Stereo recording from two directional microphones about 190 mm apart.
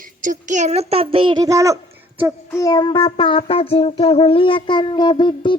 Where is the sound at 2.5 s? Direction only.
20° left (ahead or behind).